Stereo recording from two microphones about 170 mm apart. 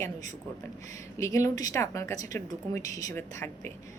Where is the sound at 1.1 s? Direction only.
20° left (ahead or behind).